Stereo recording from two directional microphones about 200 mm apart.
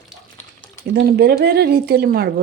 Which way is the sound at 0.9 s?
55° right (ahead or behind).